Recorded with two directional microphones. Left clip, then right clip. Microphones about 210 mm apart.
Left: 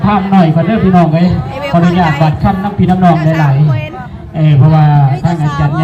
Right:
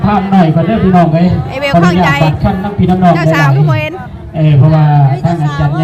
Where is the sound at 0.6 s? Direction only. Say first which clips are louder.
Even; 10° right (ahead or behind).